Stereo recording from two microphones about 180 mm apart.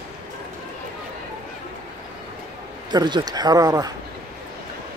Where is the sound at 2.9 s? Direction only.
25° right (ahead or behind).